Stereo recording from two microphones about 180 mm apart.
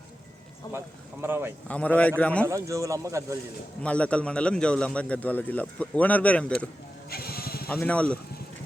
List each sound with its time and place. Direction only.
1.2 s speech: 10° right (ahead or behind)
1.6 s a man's voice: 10° left (ahead or behind)
2.5 s speech: 15° right (ahead or behind)
3.8 s a man's voice: 5° left (ahead or behind)
7.1 s vehicle: 60° left (ahead or behind)
7.7 s a man's voice: 5° left (ahead or behind)